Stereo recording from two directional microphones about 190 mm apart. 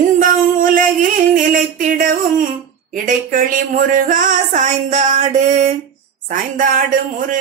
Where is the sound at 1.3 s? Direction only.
45° right (ahead or behind).